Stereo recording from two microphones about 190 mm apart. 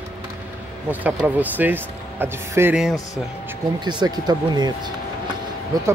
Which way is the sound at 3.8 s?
20° right (ahead or behind).